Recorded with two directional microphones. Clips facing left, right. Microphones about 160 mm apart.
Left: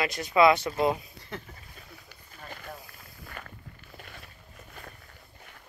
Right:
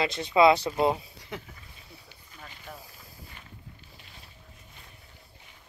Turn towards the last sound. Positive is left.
turn(degrees=60)  # may be behind; listen again after turning